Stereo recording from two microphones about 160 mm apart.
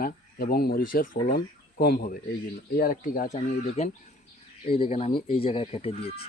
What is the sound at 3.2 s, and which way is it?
Speech, 45° left (ahead or behind).